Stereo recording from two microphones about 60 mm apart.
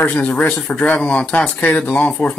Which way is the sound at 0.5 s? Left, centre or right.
Centre.